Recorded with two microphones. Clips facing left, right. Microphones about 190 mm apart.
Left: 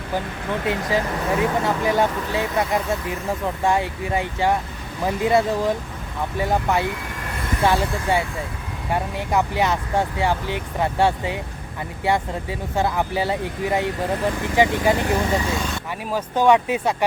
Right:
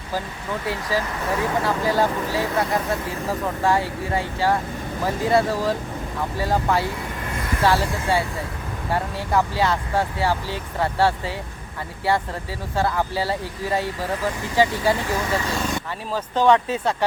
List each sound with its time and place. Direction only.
0.7 s speech: 20° left (ahead or behind)